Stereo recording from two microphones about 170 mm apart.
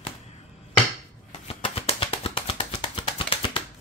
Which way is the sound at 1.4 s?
35° left (ahead or behind).